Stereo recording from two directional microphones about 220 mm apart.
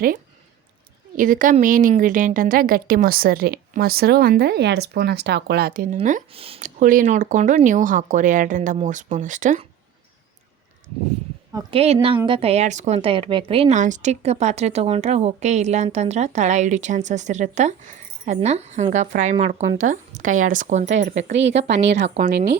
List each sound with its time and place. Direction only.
1.1 s a woman's voice: 40° right (ahead or behind)
11.5 s a woman's voice: 25° right (ahead or behind)
21.3 s a woman's voice: 55° right (ahead or behind)